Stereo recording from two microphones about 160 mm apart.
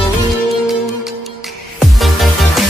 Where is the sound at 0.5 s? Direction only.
Centre (ahead or behind).